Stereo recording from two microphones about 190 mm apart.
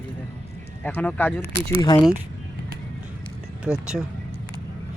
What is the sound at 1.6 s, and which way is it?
Speech, 20° left (ahead or behind).